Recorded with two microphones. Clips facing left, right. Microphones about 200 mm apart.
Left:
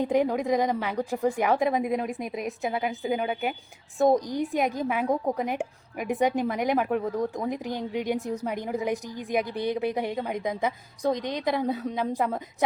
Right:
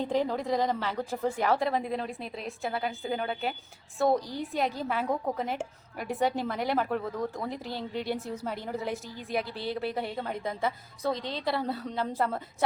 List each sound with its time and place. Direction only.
0.0 s a woman's voice: 15° left (ahead or behind)